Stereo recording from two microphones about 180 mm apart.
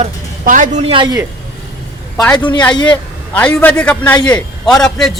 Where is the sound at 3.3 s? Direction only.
10° left (ahead or behind).